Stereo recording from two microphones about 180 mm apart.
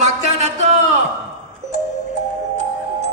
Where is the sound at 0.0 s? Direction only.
40° right (ahead or behind).